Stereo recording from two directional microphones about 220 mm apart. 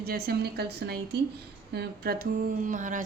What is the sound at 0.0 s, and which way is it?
A woman's voice, 45° right (ahead or behind).